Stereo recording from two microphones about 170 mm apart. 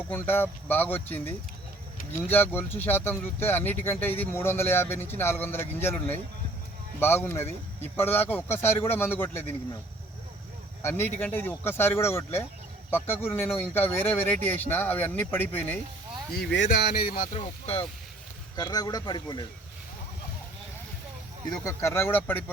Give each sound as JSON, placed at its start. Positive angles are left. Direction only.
{"t": 0.1, "sound": "speech", "side_deg": 10}
{"t": 10.8, "sound": "speech", "side_deg": 15}
{"t": 16.3, "sound": "speech", "side_deg": 75}
{"t": 17.3, "sound": "speech", "side_deg": 35}
{"t": 18.5, "sound": "a man's voice", "side_deg": 25}
{"t": 21.6, "sound": "speech", "side_deg": 20}